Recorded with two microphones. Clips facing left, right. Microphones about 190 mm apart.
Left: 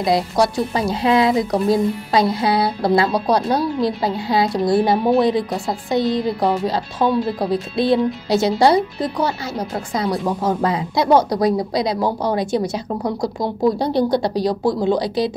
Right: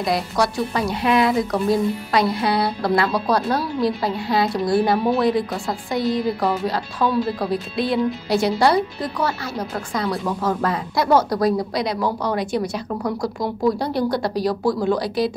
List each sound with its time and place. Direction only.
0.0 s speech: 25° left (ahead or behind)